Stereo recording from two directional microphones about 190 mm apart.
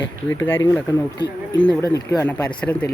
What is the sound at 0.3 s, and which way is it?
Speech, 10° left (ahead or behind).